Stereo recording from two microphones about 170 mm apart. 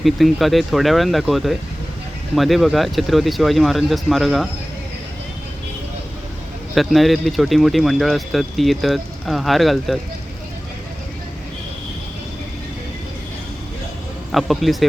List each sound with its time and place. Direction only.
0.0 s speech: centre (ahead or behind)
6.7 s speech: centre (ahead or behind)
14.3 s speech: centre (ahead or behind)